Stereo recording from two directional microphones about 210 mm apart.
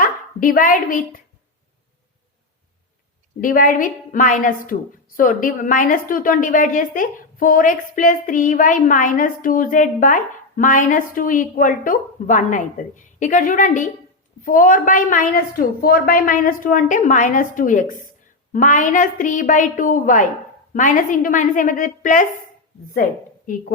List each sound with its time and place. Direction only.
0.0 s a woman's voice: 40° left (ahead or behind)
3.4 s a woman's voice: 40° left (ahead or behind)